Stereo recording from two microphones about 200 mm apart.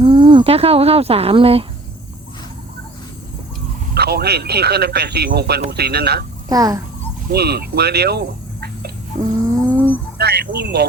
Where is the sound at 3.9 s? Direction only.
55° right (ahead or behind).